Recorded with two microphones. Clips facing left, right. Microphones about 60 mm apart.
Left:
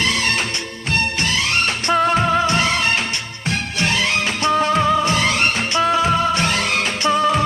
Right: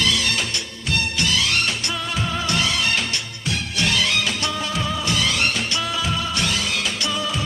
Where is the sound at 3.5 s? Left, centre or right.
Left.